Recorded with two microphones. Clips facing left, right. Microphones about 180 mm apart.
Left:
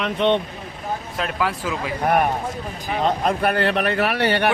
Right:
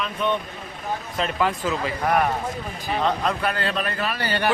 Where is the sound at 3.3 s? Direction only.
55° left (ahead or behind).